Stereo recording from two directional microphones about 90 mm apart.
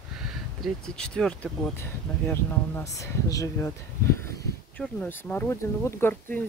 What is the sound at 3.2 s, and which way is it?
Speech, 40° left (ahead or behind).